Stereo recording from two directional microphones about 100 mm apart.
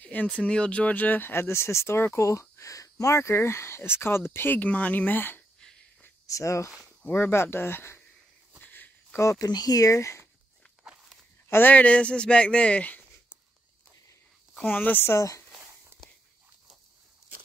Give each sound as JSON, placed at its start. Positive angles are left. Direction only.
{"t": 0.0, "sound": "a sound", "side_deg": 15}
{"t": 0.4, "sound": "speech", "side_deg": 10}
{"t": 6.2, "sound": "speech", "side_deg": 30}
{"t": 8.5, "sound": "a sound", "side_deg": 15}
{"t": 9.2, "sound": "speech", "side_deg": 30}
{"t": 11.4, "sound": "speech", "side_deg": 20}
{"t": 14.6, "sound": "speech", "side_deg": 20}
{"t": 15.1, "sound": "speech", "side_deg": 30}
{"t": 15.6, "sound": "a sound", "side_deg": -25}